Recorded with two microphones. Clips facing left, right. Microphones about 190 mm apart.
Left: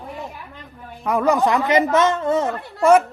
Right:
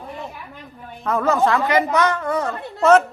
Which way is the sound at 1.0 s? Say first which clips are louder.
Left 1 dB; 15° left (ahead or behind).